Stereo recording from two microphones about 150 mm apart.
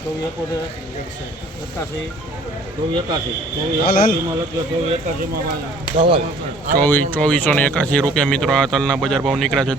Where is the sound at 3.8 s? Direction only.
80° left.